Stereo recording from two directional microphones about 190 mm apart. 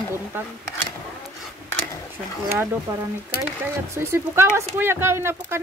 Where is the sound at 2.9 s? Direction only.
15° right (ahead or behind).